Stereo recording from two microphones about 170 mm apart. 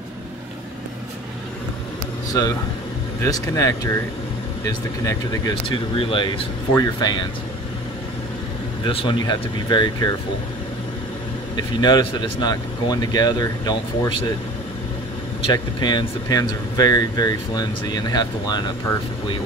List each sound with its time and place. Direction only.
3.2 s speech: 20° left (ahead or behind)
8.8 s speech: 25° left (ahead or behind)
11.5 s speech: 25° left (ahead or behind)
15.4 s speech: 25° left (ahead or behind)